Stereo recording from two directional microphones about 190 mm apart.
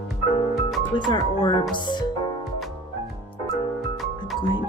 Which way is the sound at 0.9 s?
25° left (ahead or behind).